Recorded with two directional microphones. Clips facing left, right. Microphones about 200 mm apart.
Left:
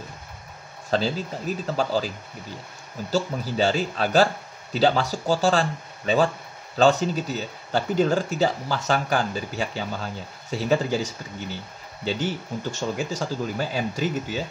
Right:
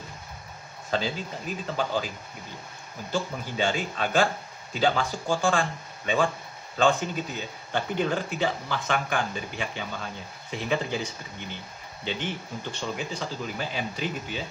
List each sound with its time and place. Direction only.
0.8 s speech: 40° left (ahead or behind)
3.1 s speech: 40° left (ahead or behind)
12.0 s speech: 40° left (ahead or behind)